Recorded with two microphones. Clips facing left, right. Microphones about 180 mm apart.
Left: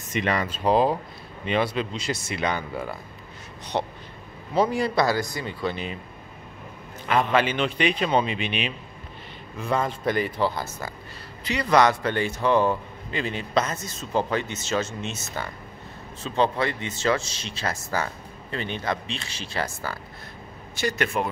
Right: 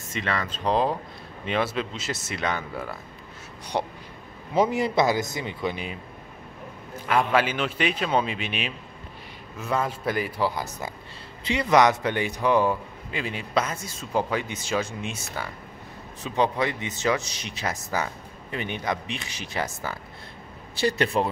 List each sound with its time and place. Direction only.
0.1 s a man's voice: 15° left (ahead or behind); by 3.9 s 5° right (ahead or behind)
4.6 s speech: 20° right (ahead or behind)
7.1 s a man's voice: 10° right (ahead or behind)
20.8 s speech: 30° right (ahead or behind)